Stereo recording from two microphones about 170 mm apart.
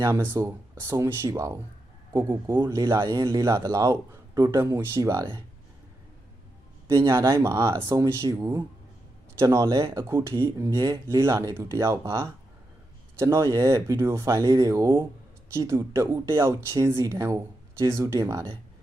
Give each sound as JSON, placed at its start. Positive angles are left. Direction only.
{"t": 0.0, "sound": "speech", "side_deg": -15}
{"t": 6.8, "sound": "speech", "side_deg": -15}